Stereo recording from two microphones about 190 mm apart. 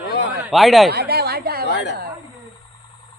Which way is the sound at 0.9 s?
55° right (ahead or behind).